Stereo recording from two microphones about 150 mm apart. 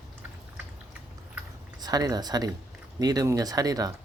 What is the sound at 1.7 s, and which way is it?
Speech, 25° right (ahead or behind).